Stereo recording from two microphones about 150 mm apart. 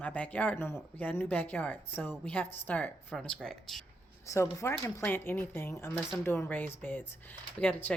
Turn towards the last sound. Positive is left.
turn(degrees=10)  # may be behind; listen again after turning